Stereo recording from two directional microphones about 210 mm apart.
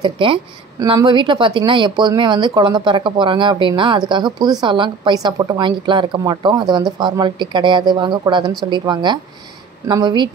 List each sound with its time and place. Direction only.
0.0 s a woman's voice: 25° right (ahead or behind)